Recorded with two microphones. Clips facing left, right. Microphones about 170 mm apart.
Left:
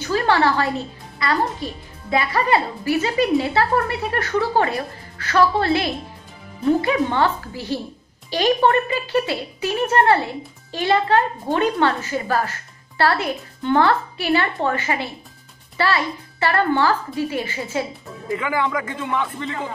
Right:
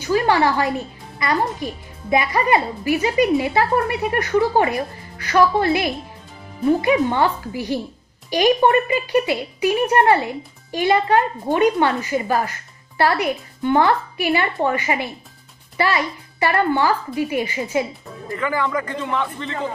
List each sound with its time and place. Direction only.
0.1 s speech: 15° right (ahead or behind)
18.3 s speech: 20° left (ahead or behind)